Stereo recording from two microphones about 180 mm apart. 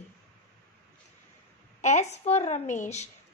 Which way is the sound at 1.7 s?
40° left (ahead or behind).